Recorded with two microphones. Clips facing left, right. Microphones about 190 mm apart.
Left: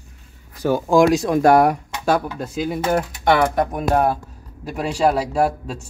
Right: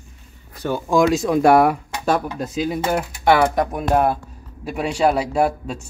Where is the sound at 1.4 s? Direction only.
40° left (ahead or behind).